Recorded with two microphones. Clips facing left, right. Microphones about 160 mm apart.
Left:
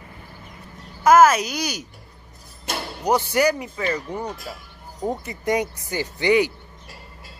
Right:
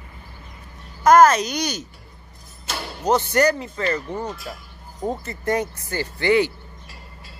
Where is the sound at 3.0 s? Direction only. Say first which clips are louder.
Right 1 dB; 10° left (ahead or behind).